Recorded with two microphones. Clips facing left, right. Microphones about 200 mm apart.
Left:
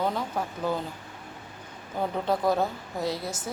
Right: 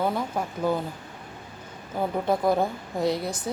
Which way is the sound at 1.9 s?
10° right (ahead or behind).